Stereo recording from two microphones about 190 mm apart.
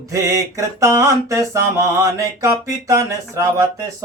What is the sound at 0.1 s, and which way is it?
Mantra, 15° right (ahead or behind).